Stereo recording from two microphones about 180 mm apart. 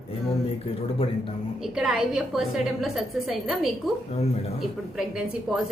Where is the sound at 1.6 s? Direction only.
Centre (ahead or behind).